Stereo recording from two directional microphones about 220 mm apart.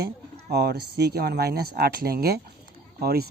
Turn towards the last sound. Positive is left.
turn(degrees=-45)  # may be behind; listen again after turning